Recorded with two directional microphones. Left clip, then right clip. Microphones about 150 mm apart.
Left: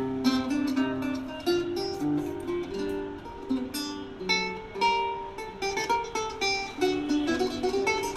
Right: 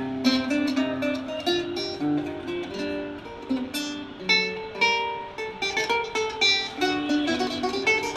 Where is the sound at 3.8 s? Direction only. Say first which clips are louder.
Right 3 dB; 25° right (ahead or behind).